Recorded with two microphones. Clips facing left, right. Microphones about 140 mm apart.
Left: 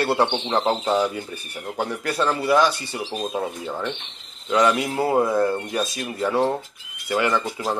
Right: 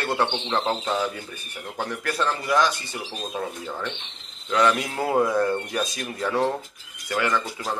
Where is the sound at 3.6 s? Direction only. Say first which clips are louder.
Left 4 dB; 20° left (ahead or behind).